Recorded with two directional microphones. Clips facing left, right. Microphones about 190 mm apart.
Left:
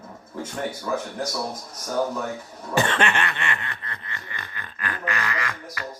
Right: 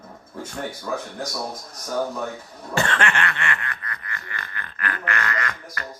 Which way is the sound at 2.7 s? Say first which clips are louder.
Left 1 dB; 20° left (ahead or behind).